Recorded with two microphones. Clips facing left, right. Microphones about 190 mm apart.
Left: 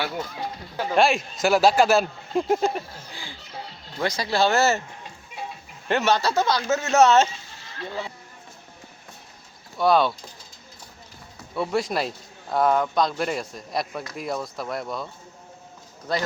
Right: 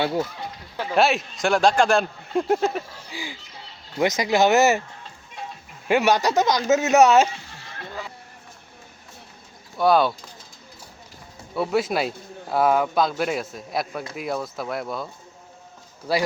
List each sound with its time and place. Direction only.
0.8 s speech: centre (ahead or behind)
3.1 s speech: 10° right (ahead or behind)
5.9 s speech: 15° right (ahead or behind)
7.3 s a sound: 60° right (ahead or behind)
9.7 s speech: centre (ahead or behind)
11.5 s speech: 5° right (ahead or behind)